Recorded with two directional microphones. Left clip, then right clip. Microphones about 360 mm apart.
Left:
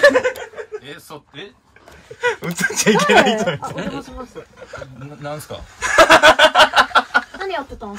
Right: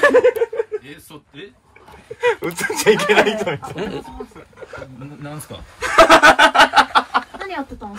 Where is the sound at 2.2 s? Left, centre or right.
Centre.